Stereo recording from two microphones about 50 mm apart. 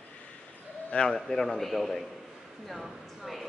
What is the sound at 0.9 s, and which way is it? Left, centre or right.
A man's voice, centre.